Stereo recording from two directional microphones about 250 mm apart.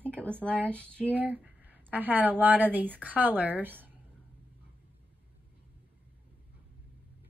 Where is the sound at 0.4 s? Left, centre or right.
Centre.